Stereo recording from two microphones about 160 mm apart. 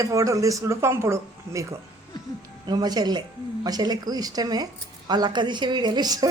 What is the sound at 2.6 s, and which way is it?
A woman's voice, 25° right (ahead or behind).